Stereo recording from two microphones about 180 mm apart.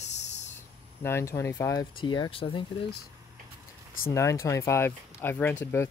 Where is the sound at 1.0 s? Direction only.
15° left (ahead or behind).